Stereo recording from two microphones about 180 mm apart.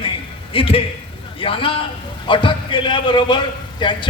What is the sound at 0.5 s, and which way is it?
A man's voice, 30° left (ahead or behind).